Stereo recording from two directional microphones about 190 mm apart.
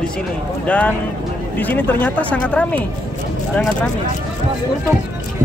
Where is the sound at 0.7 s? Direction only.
5° left (ahead or behind).